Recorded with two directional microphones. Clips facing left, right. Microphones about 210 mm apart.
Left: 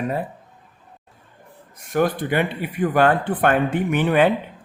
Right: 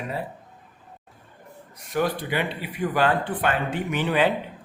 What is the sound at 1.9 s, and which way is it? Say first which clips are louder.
Speech: left 5 dB; 50° left (ahead or behind).